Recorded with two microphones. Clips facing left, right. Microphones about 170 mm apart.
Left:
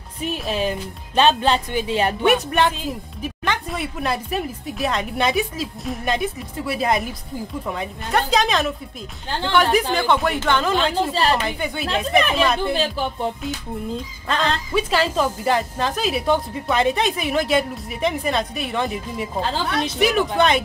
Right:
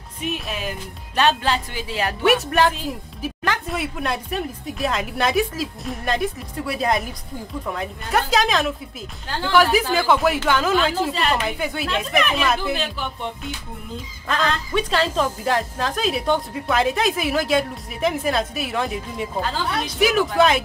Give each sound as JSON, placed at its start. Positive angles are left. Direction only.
{"t": 0.2, "sound": "speech", "side_deg": 30}
{"t": 2.2, "sound": "a woman's voice", "side_deg": 0}
{"t": 12.7, "sound": "speech", "side_deg": 35}
{"t": 14.3, "sound": "a woman's voice", "side_deg": 0}